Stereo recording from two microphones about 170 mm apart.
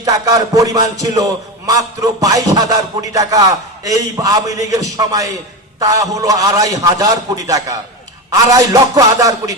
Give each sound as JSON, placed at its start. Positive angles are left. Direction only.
{"t": 0.0, "sound": "a man's voice", "side_deg": -20}